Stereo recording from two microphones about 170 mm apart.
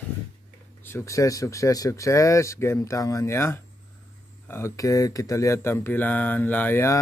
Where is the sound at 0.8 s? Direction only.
15° left (ahead or behind).